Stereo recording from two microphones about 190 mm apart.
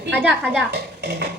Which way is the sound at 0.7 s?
60° right (ahead or behind).